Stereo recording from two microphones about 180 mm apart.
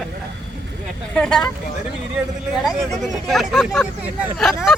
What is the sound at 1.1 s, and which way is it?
Speech, 5° left (ahead or behind).